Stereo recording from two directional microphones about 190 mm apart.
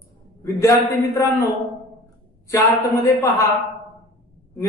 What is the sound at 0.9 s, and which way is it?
Speech, 15° left (ahead or behind).